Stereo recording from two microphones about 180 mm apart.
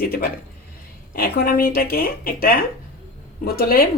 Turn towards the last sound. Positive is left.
turn(degrees=55)  # may be behind; listen again after turning